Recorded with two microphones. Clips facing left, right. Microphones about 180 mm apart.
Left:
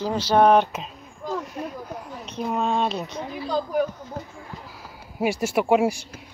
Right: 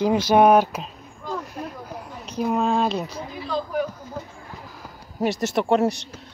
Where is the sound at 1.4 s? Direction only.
Centre (ahead or behind).